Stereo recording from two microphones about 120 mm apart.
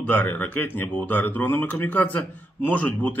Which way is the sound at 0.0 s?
15° left (ahead or behind).